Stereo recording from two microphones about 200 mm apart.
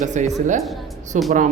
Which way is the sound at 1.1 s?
35° right (ahead or behind).